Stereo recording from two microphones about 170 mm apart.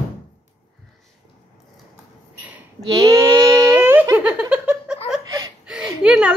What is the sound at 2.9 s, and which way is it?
Giggle, 20° right (ahead or behind).